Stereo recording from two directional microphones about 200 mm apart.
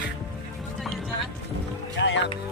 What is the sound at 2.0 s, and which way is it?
Music, 60° left (ahead or behind).